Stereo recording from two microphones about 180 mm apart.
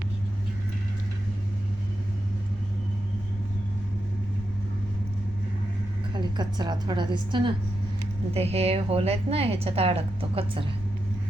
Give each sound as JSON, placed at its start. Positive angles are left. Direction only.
{"t": 6.1, "sound": "a woman's voice", "side_deg": -25}